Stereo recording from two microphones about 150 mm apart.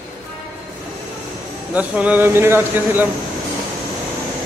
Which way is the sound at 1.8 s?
10° right (ahead or behind).